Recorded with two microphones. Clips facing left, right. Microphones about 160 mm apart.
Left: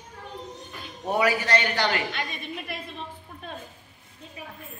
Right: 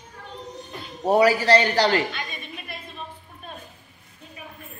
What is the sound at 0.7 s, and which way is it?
A man's voice, 35° right (ahead or behind).